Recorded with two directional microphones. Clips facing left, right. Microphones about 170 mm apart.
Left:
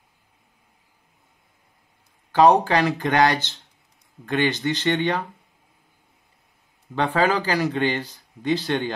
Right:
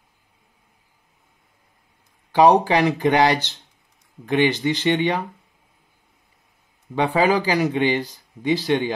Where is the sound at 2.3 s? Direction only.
15° right (ahead or behind).